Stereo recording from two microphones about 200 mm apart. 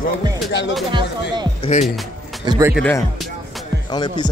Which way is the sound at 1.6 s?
35° left (ahead or behind).